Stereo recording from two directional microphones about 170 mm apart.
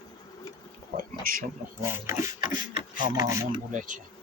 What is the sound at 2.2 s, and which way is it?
Speech, 25° right (ahead or behind).